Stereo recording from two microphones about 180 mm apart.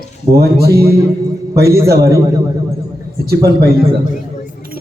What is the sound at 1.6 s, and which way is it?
Speech, 15° right (ahead or behind).